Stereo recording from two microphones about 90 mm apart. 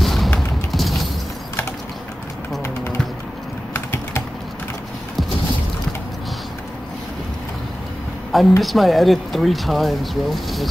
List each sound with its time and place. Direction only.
0.0 s a sound: centre (ahead or behind)
0.7 s mechanisms: centre (ahead or behind)
3.7 s typing: 25° left (ahead or behind)
8.3 s speech: centre (ahead or behind)